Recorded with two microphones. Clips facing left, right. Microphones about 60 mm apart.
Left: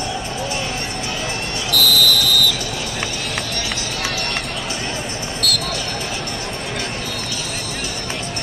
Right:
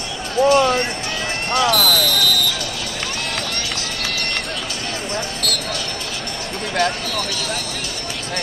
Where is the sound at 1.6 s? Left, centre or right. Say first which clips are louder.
Left 2 dB; right.